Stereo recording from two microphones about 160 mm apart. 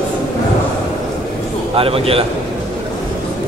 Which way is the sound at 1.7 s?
35° right (ahead or behind).